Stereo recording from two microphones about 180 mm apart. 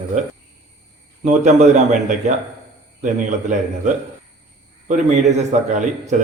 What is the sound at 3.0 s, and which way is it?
Speech, 45° right (ahead or behind).